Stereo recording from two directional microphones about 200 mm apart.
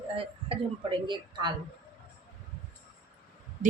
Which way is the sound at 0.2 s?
25° right (ahead or behind).